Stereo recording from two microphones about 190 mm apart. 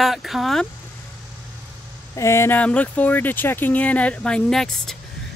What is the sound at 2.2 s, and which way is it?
Speech, 15° left (ahead or behind).